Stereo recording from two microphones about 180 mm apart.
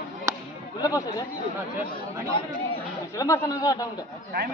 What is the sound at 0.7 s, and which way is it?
Speech, 25° left (ahead or behind).